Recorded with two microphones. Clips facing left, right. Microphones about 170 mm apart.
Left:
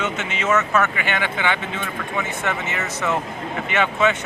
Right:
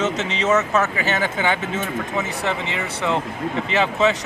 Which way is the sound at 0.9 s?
40° right (ahead or behind).